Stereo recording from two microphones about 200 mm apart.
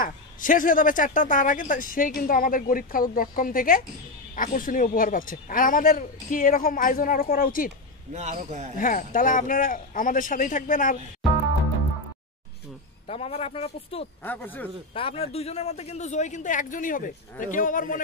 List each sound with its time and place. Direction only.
0.0 s a man's voice: 40° left (ahead or behind)
8.1 s a man's voice: 35° right (ahead or behind)
8.7 s speech: 45° left (ahead or behind)
13.0 s speech: 30° left (ahead or behind)
14.2 s speech: 10° left (ahead or behind)
15.0 s speech: 30° left (ahead or behind)